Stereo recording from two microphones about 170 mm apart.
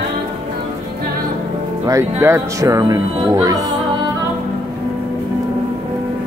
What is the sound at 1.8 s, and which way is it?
Speech, 15° right (ahead or behind).